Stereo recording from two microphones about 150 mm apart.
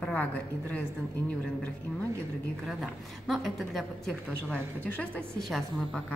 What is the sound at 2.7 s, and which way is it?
A woman's voice, centre (ahead or behind).